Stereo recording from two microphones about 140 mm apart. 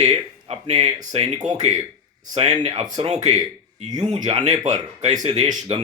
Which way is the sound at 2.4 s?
50° right (ahead or behind).